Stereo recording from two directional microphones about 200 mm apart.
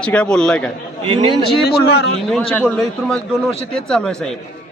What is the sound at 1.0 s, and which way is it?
Speech, 30° right (ahead or behind).